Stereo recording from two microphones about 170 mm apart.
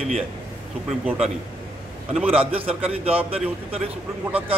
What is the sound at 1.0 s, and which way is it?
Speech, 5° right (ahead or behind).